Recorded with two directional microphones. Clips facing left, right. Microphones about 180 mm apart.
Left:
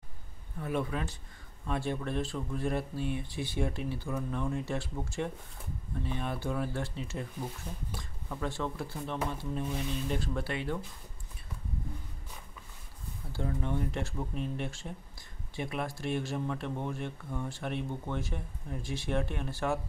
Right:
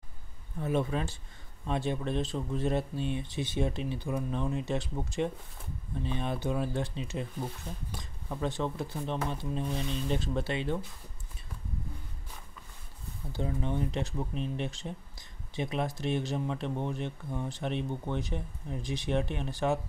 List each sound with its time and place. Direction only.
0.6 s speech: 25° right (ahead or behind)
13.3 s speech: 20° right (ahead or behind)